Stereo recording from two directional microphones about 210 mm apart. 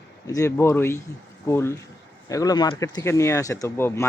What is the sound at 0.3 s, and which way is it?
Speech, 15° left (ahead or behind).